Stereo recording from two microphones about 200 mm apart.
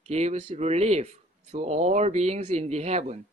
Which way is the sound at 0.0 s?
35° right (ahead or behind).